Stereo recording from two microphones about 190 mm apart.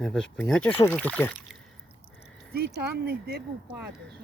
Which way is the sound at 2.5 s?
55° right (ahead or behind).